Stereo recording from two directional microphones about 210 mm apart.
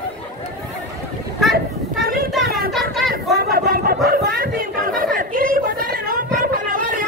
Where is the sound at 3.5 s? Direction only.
45° right (ahead or behind).